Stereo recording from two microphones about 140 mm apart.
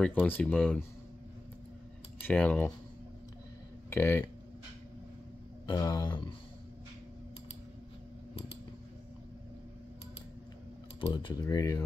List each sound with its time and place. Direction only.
0.0 s speech: 10° left (ahead or behind)
2.2 s speech: 10° left (ahead or behind)
3.9 s speech: 15° left (ahead or behind)
5.7 s speech: 30° left (ahead or behind)
11.1 s speech: 30° left (ahead or behind)